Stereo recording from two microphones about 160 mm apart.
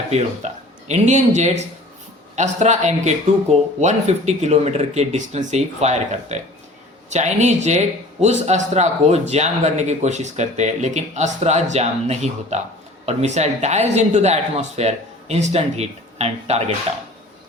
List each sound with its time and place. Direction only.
0.1 s a man's voice: 45° right (ahead or behind)